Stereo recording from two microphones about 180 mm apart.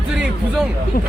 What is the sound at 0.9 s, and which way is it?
Speech, 55° left (ahead or behind).